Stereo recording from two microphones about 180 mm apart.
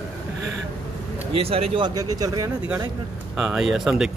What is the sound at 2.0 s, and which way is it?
Speech, 20° right (ahead or behind).